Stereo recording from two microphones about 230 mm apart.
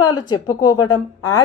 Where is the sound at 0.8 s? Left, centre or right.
Centre.